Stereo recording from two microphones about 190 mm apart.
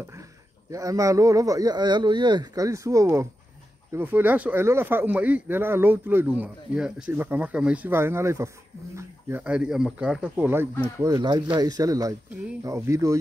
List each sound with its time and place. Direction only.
0.1 s speech: 15° right (ahead or behind)